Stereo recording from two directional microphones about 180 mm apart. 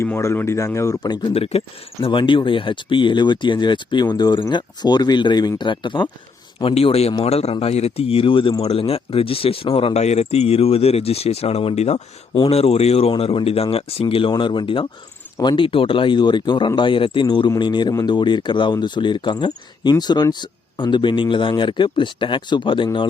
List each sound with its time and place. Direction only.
0.0 s a man's voice: 15° left (ahead or behind)